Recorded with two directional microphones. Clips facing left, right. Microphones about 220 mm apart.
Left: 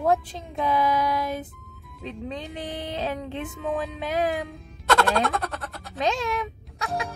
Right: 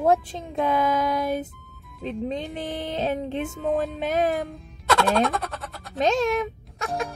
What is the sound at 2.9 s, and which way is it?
Speech, 20° right (ahead or behind).